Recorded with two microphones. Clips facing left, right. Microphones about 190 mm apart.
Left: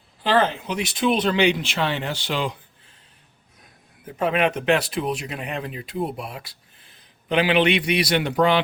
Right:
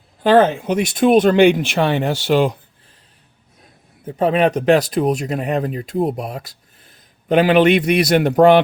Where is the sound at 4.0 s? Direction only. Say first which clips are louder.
Right 6 dB; 30° right (ahead or behind).